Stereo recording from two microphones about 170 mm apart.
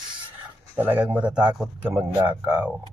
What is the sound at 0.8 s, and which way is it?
A man's voice, 10° right (ahead or behind).